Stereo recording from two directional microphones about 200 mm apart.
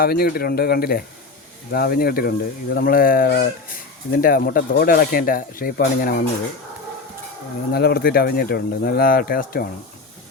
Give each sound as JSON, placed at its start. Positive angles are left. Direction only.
{"t": 0.0, "sound": "speech", "side_deg": 50}
{"t": 7.7, "sound": "speech", "side_deg": 50}